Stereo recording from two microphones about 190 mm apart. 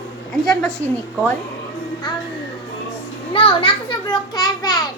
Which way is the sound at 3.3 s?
30° left (ahead or behind).